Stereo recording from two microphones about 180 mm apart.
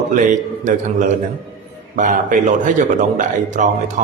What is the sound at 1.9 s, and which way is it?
Mantra, 45° right (ahead or behind).